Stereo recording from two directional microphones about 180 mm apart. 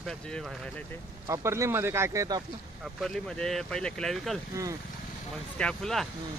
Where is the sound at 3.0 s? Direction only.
Centre (ahead or behind).